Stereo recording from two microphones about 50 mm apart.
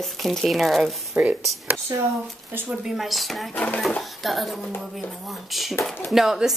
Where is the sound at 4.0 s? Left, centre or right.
Centre.